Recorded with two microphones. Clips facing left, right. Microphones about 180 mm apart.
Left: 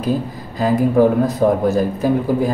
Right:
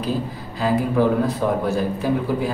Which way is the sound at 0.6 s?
45° left (ahead or behind).